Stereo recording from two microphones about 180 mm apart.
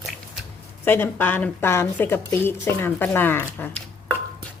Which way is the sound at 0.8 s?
10° left (ahead or behind).